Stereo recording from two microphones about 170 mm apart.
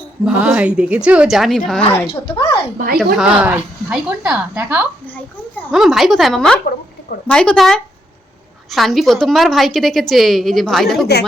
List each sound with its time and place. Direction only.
0.3 s speech: 5° right (ahead or behind)
2.0 s speech: 30° left (ahead or behind)
2.7 s speech: 60° right (ahead or behind)
3.0 s a woman's voice: 5° right (ahead or behind)
11.0 s a woman's voice: 75° left (ahead or behind)